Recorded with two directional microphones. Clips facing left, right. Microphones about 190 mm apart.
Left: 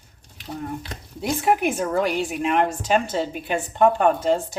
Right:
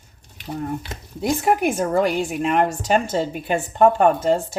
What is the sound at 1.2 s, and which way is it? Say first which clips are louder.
A woman's voice: right 2 dB; 45° right (ahead or behind).